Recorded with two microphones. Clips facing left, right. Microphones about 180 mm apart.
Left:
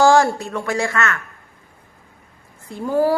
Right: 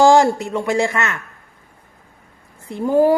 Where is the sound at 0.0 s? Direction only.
20° right (ahead or behind).